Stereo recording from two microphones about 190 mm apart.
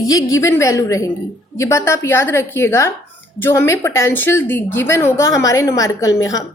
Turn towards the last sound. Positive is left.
turn(degrees=20)  # may be behind; listen again after turning